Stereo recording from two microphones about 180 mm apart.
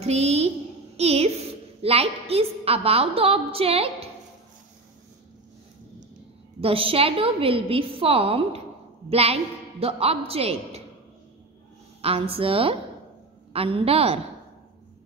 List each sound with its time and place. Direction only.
0.0 s a child's voice: 35° right (ahead or behind)
6.6 s a woman's voice: 30° right (ahead or behind)
12.0 s a woman's voice: 30° right (ahead or behind)